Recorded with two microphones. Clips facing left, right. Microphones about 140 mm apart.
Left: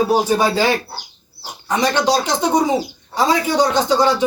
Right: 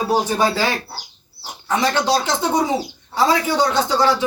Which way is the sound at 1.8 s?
15° left (ahead or behind).